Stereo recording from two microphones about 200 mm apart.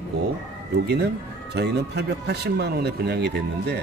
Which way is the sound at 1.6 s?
55° right (ahead or behind).